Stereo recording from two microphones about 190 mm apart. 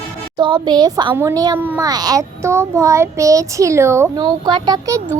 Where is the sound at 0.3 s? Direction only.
25° right (ahead or behind).